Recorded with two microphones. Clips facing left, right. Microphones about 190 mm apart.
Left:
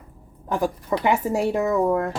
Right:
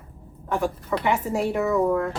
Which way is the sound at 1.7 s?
35° left (ahead or behind).